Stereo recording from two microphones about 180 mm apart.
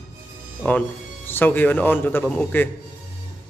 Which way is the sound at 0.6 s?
10° left (ahead or behind).